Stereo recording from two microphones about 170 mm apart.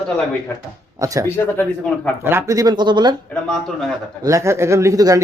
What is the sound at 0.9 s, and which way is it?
Speech, 20° right (ahead or behind).